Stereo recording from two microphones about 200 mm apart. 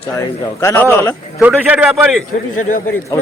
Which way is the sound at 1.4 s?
5° right (ahead or behind).